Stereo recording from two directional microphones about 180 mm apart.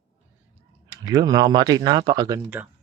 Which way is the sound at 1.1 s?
25° right (ahead or behind).